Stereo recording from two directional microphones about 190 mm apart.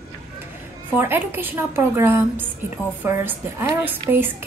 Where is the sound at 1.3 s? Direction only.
10° right (ahead or behind).